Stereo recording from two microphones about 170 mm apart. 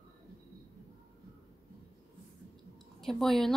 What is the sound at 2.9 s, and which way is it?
Speech, centre (ahead or behind).